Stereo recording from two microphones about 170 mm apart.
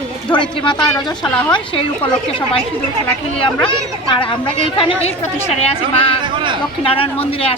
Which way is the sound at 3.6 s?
30° left (ahead or behind).